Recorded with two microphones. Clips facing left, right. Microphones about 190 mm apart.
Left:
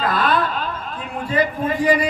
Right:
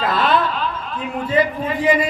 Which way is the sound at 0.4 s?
45° left (ahead or behind).